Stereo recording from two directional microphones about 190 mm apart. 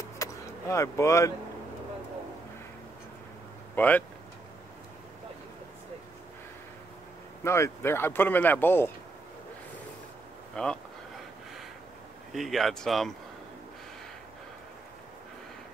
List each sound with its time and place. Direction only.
0.2 s vehicle: 15° left (ahead or behind)
3.7 s speech: 10° left (ahead or behind)
7.4 s speech: 15° left (ahead or behind)
10.5 s speech: 5° left (ahead or behind)
12.3 s speech: centre (ahead or behind)